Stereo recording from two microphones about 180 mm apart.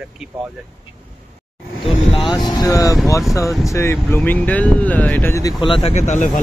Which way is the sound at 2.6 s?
20° left (ahead or behind).